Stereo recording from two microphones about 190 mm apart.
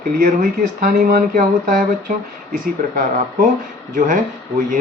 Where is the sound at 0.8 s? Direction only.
50° right (ahead or behind).